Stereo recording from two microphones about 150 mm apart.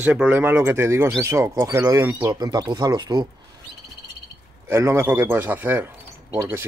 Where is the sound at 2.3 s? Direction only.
25° right (ahead or behind).